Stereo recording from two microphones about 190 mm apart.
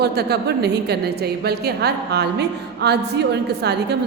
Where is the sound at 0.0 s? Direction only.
60° right (ahead or behind).